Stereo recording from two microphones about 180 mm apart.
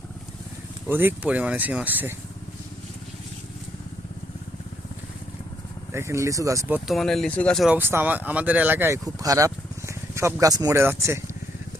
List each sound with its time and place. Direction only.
0.9 s speech: 10° right (ahead or behind)
5.9 s speech: 15° right (ahead or behind)
6.7 s speech: centre (ahead or behind)
7.8 s speech: 10° right (ahead or behind)